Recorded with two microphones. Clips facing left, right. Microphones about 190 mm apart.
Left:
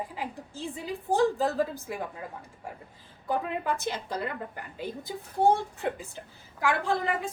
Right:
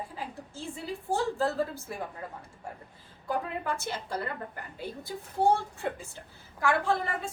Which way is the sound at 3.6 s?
15° left (ahead or behind).